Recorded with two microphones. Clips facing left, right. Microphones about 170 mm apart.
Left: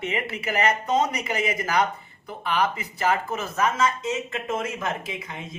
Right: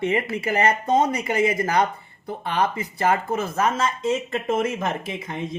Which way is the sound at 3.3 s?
30° right (ahead or behind).